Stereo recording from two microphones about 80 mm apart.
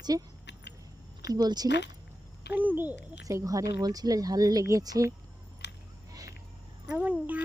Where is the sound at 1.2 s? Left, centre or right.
Right.